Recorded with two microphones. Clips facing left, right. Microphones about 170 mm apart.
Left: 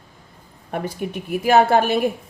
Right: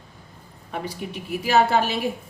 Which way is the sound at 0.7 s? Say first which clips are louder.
Left 5 dB; 50° left (ahead or behind).